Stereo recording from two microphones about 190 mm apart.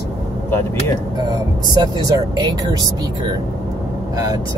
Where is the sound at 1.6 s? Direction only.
20° right (ahead or behind).